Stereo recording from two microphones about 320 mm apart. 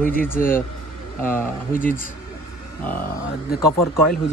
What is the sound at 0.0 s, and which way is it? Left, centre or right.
Speech, left.